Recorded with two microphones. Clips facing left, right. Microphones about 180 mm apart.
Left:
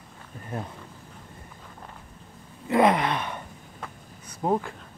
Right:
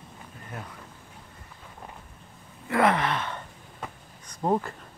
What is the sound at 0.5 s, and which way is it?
Speech, 30° left (ahead or behind).